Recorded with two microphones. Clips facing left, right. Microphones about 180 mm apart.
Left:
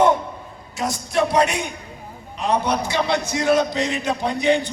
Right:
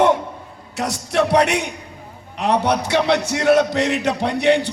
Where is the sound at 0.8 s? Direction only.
70° right (ahead or behind).